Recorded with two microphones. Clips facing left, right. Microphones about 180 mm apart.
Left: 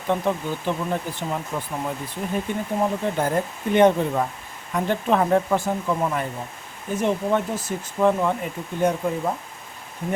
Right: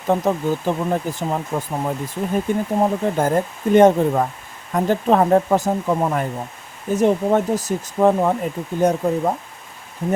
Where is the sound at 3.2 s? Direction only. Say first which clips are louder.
Right 4 dB; 45° right (ahead or behind).